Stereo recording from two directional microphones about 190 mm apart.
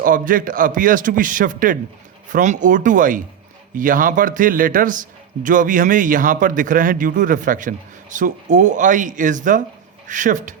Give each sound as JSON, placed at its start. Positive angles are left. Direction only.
{"t": 0.0, "sound": "a man's voice", "side_deg": -45}